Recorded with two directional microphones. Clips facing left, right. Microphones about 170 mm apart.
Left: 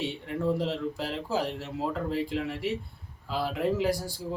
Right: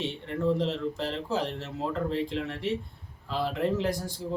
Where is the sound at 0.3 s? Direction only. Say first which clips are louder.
Right 2 dB; 5° left (ahead or behind).